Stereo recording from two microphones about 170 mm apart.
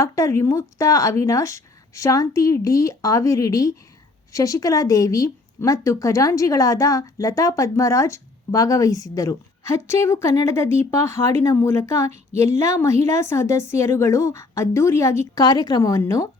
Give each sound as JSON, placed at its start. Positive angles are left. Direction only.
{"t": 0.0, "sound": "a woman's voice", "side_deg": 15}